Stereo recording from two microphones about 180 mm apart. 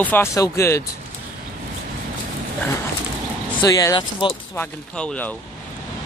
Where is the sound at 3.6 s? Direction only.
20° left (ahead or behind).